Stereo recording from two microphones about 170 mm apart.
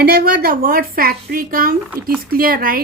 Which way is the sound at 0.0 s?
60° right (ahead or behind).